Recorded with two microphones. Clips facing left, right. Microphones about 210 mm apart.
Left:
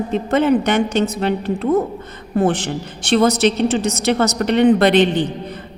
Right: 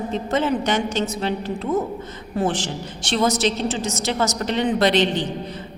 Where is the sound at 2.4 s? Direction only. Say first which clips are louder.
Left 5 dB; 60° left (ahead or behind).